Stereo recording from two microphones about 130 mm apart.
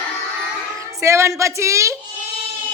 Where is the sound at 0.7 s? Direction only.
25° right (ahead or behind).